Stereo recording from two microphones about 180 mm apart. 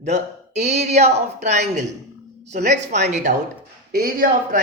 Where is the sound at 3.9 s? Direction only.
55° right (ahead or behind).